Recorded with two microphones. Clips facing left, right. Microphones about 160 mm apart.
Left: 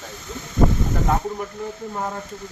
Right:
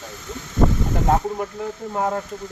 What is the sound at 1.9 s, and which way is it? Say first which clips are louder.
Speech: right 7 dB; 50° right (ahead or behind).